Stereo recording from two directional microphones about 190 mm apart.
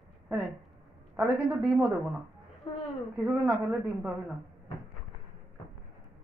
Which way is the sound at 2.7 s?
25° left (ahead or behind).